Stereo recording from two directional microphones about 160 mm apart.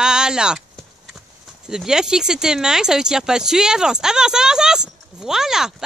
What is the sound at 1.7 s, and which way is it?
Speech, 5° right (ahead or behind).